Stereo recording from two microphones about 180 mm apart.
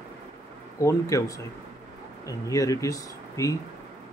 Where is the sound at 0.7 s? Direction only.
15° left (ahead or behind).